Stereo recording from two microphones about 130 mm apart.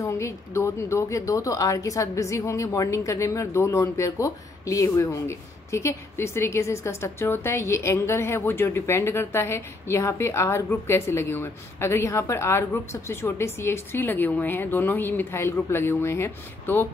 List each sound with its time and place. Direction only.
0.0 s speech: 25° left (ahead or behind)